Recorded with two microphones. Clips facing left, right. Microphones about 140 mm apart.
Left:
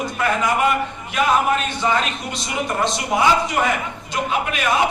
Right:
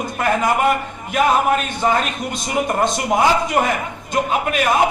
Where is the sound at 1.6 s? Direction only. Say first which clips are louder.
Right 2 dB; 50° right (ahead or behind).